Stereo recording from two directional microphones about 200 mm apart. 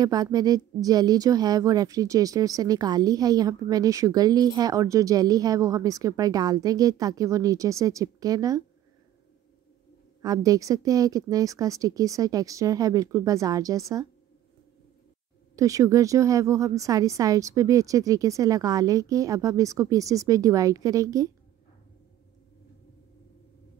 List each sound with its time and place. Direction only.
0.0 s speech: 20° right (ahead or behind)
10.2 s speech: 20° right (ahead or behind)
15.5 s speech: 15° right (ahead or behind)